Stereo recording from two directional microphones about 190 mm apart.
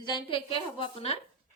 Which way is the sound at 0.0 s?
25° left (ahead or behind).